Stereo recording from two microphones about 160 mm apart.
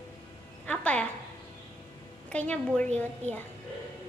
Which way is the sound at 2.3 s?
10° left (ahead or behind).